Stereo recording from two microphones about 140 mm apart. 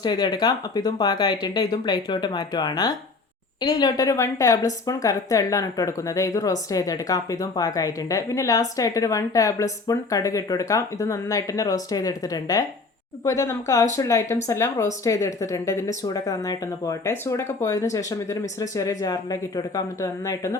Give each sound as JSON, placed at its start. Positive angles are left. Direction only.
{"t": 0.0, "sound": "speech", "side_deg": 30}